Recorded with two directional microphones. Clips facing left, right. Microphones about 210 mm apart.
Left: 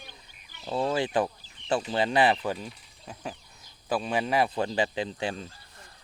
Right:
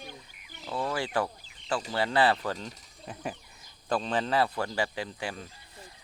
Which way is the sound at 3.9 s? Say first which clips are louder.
Left 1 dB; 10° left (ahead or behind).